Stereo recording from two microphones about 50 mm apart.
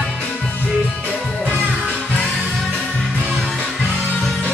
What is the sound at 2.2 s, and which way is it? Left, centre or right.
Music, centre.